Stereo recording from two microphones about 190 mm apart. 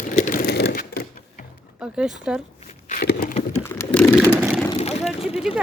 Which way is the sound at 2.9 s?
50° left (ahead or behind).